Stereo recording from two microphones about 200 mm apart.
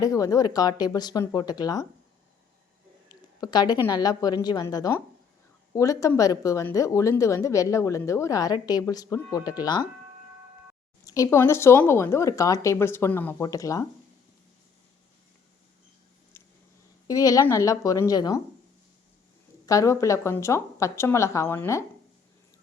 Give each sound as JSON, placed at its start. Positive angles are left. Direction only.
{"t": 0.0, "sound": "a woman's voice", "side_deg": 15}
{"t": 3.1, "sound": "a woman's voice", "side_deg": 20}
{"t": 11.0, "sound": "speech", "side_deg": 15}
{"t": 16.3, "sound": "a sound", "side_deg": 10}
{"t": 17.1, "sound": "speech", "side_deg": 15}
{"t": 19.6, "sound": "speech", "side_deg": 15}